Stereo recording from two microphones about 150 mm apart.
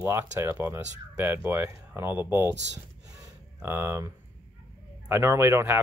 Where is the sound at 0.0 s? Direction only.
15° right (ahead or behind).